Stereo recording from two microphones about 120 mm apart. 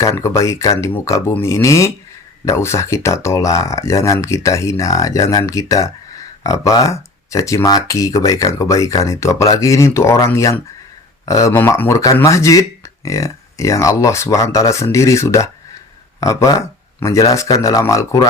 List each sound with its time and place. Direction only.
0.0 s speech: 25° left (ahead or behind)